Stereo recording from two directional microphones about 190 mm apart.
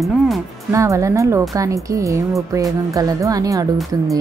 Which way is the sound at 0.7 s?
15° right (ahead or behind).